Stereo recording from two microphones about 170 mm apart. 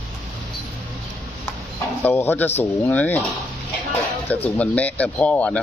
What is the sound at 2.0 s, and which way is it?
Speech, 10° left (ahead or behind).